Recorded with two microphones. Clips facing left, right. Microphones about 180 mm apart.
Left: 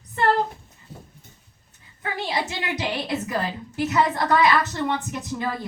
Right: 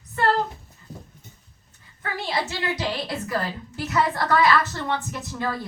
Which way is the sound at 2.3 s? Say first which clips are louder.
Right 2 dB; 20° left (ahead or behind).